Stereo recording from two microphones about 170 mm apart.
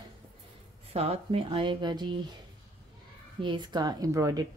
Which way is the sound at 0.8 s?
35° right (ahead or behind).